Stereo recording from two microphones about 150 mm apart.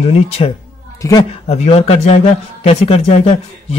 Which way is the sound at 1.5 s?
45° left (ahead or behind).